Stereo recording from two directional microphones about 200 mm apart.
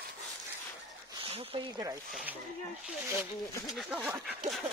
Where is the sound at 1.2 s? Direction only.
25° right (ahead or behind).